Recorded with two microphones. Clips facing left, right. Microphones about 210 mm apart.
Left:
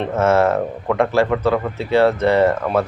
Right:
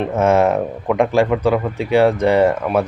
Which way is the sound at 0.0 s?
15° right (ahead or behind).